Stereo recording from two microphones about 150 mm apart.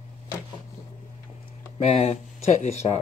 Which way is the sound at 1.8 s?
45° left (ahead or behind).